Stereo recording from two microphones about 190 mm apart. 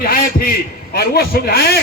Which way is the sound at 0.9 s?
55° left (ahead or behind).